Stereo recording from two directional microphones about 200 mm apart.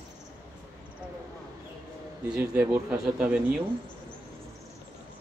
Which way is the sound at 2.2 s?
5° right (ahead or behind).